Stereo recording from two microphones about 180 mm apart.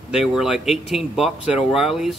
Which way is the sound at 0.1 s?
5° right (ahead or behind).